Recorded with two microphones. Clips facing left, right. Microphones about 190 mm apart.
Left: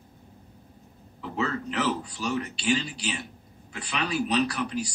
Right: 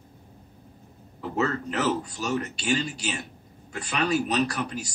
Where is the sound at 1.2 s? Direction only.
45° right (ahead or behind).